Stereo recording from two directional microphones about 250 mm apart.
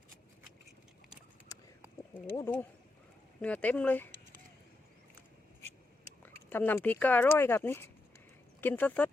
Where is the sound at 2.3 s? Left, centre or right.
Centre.